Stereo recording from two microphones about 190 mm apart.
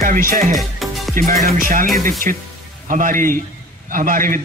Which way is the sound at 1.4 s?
45° right (ahead or behind).